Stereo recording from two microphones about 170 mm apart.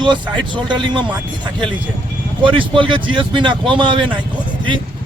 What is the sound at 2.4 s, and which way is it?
Speech, 30° right (ahead or behind).